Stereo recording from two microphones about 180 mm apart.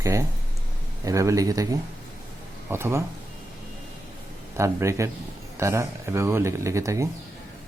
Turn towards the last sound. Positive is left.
turn(degrees=-15)  # may be behind; listen again after turning